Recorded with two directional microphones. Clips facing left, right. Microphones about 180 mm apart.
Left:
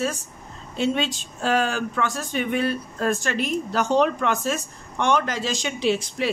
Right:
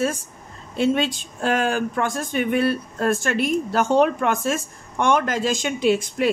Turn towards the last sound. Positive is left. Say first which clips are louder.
# right 3 dB
turn(degrees=-50)  # may be behind; listen again after turning